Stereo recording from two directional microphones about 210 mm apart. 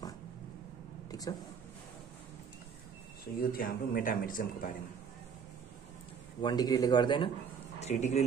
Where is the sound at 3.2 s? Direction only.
45° left (ahead or behind).